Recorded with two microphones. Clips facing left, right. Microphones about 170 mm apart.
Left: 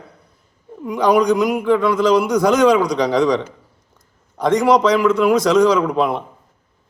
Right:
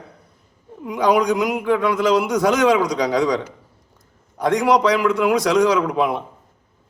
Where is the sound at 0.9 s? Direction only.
15° right (ahead or behind).